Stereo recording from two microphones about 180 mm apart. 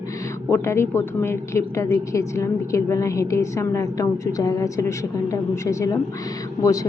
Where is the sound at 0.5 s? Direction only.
15° left (ahead or behind).